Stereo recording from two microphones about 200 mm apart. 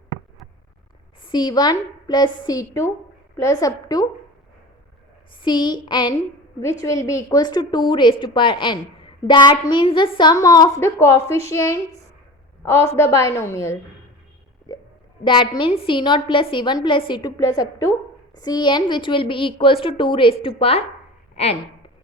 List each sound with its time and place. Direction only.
1.3 s a woman's voice: 20° left (ahead or behind)
5.4 s a woman's voice: 20° left (ahead or behind)
15.2 s a woman's voice: 25° left (ahead or behind)